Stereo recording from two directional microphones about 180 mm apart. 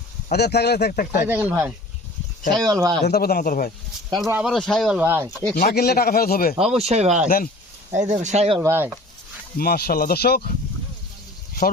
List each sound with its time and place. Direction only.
0.3 s speech: 65° left (ahead or behind)
1.3 s speech: 10° right (ahead or behind)
2.6 s speech: 20° right (ahead or behind)
3.0 s speech: 60° left (ahead or behind)
4.3 s speech: 5° right (ahead or behind)
5.5 s speech: 60° left (ahead or behind)
6.7 s speech: 35° right (ahead or behind)
8.6 s speech: 10° right (ahead or behind)
9.6 s speech: 60° left (ahead or behind)